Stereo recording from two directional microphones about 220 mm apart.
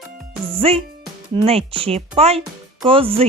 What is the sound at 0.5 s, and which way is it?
Speech, 25° right (ahead or behind).